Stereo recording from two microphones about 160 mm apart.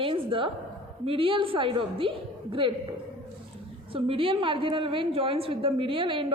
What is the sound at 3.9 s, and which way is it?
A woman's voice, 35° right (ahead or behind).